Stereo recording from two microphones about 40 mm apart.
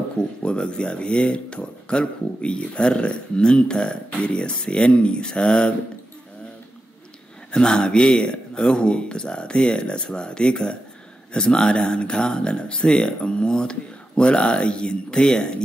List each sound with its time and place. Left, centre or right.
0.2 s speech: left
7.5 s speech: centre